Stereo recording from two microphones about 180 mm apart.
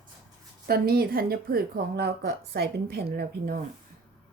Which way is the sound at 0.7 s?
60° right (ahead or behind).